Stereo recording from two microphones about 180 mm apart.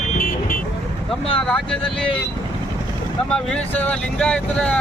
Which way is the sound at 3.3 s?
5° left (ahead or behind).